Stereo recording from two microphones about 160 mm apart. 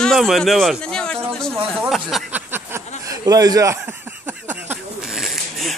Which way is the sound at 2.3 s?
10° right (ahead or behind).